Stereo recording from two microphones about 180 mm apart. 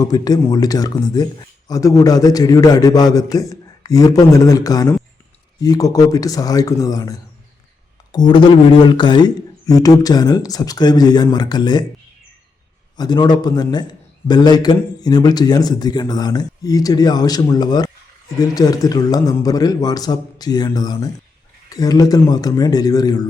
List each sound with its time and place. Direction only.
0.0 s speech: 20° left (ahead or behind)
13.0 s speech: 20° left (ahead or behind)